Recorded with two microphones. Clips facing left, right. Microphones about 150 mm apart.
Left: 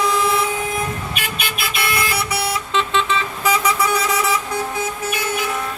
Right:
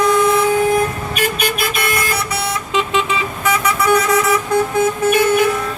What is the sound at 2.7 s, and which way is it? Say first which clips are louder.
Vehicle: right 2 dB; 10° right (ahead or behind).